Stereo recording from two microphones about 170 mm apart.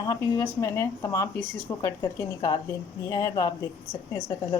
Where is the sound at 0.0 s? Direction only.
20° left (ahead or behind).